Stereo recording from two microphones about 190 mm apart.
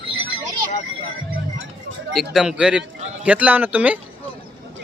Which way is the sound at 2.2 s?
5° right (ahead or behind).